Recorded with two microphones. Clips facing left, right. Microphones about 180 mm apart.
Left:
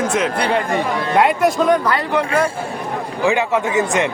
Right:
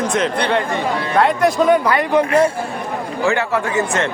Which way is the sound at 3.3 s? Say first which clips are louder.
Left 2 dB; 15° left (ahead or behind).